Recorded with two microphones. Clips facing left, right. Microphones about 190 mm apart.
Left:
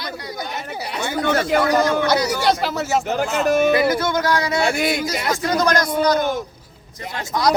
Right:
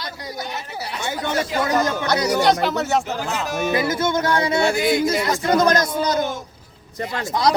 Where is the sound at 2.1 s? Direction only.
5° left (ahead or behind).